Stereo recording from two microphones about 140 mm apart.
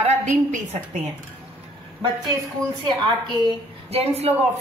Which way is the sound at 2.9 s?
30° right (ahead or behind).